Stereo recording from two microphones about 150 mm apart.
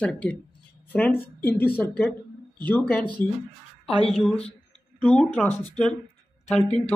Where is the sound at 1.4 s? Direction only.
10° left (ahead or behind).